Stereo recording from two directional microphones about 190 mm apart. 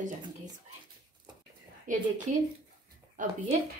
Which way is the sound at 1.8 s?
40° right (ahead or behind).